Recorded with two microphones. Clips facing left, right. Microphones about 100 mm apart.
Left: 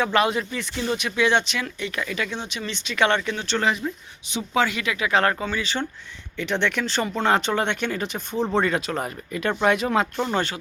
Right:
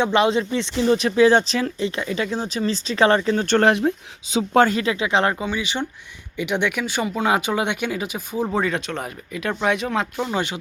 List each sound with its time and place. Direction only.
0.0 s speech: 25° right (ahead or behind)
3.4 s speech: 55° right (ahead or behind)
4.5 s speech: 45° right (ahead or behind)
4.8 s speech: 30° right (ahead or behind); by 10.4 s centre (ahead or behind)